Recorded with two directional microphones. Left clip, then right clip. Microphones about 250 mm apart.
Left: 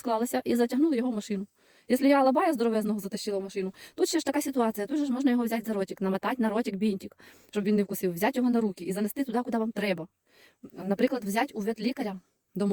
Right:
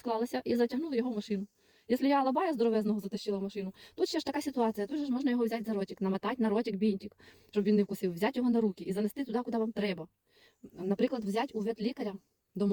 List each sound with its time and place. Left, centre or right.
0.0 s speech: left
10.8 s speech: left